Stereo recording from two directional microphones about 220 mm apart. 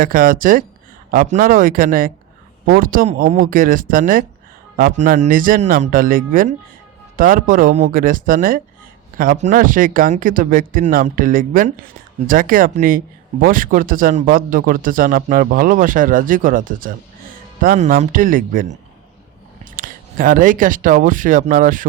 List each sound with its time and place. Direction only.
0.0 s speech: 40° right (ahead or behind)